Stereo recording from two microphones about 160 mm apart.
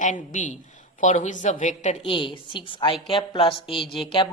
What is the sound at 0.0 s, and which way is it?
Speech, 50° left (ahead or behind).